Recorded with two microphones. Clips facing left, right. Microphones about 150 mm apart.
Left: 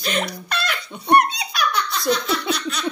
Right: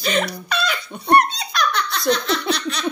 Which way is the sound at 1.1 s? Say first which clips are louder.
Even; 10° left (ahead or behind).